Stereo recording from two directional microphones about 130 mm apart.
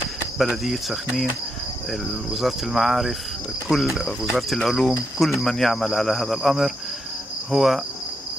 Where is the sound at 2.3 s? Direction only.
Centre (ahead or behind).